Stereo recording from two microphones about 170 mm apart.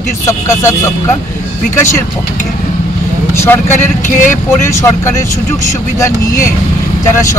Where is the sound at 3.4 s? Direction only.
15° left (ahead or behind).